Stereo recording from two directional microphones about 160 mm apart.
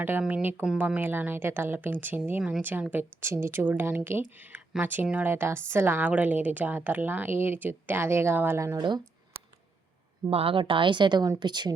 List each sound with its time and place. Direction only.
0.0 s a woman's voice: 10° right (ahead or behind)
10.2 s speech: 35° right (ahead or behind)